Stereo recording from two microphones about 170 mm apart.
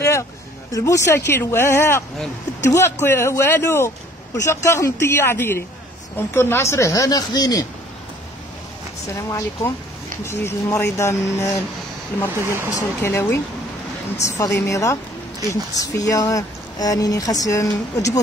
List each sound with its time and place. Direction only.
0.0 s a sound: 15° left (ahead or behind)
0.7 s speech: 20° left (ahead or behind)
10.2 s speech: 15° left (ahead or behind)
12.4 s speech: 15° right (ahead or behind)
12.7 s speech: 15° left (ahead or behind)